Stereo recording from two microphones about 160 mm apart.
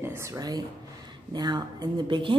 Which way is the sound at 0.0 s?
15° right (ahead or behind).